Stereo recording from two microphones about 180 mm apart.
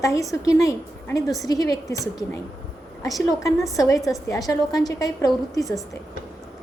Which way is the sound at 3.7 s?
20° left (ahead or behind).